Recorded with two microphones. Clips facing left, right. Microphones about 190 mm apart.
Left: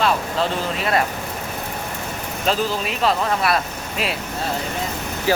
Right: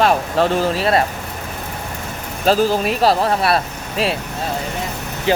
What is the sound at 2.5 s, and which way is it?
Speech, 35° right (ahead or behind).